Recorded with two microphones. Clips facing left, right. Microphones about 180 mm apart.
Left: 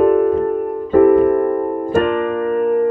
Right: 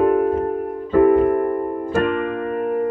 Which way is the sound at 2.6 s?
50° left (ahead or behind).